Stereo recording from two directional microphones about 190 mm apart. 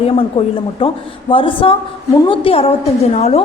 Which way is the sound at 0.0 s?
30° left (ahead or behind).